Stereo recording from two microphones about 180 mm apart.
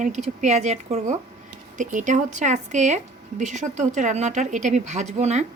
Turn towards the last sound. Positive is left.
turn(degrees=-40)  # may be behind; listen again after turning